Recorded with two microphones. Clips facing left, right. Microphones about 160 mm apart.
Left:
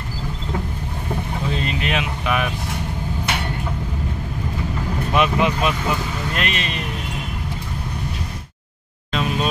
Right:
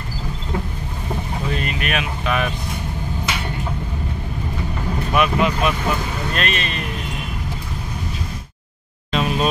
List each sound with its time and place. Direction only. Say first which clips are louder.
1.5 s vehicle: even; 25° left (ahead or behind)
3.3 s vehicle: left 2 dB; 60° left (ahead or behind)
5.1 s speech: even; 25° left (ahead or behind)
9.1 s a sound: right 2 dB; 5° right (ahead or behind)